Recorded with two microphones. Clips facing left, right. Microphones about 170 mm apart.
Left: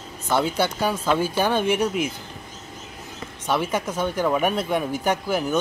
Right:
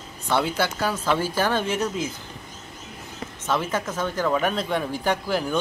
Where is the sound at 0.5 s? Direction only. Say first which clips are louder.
Left 2 dB; 20° left (ahead or behind).